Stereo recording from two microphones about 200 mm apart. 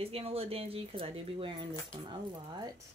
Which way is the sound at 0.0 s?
30° right (ahead or behind).